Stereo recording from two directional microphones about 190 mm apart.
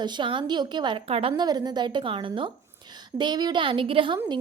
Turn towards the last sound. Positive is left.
turn(degrees=-25)  # may be behind; listen again after turning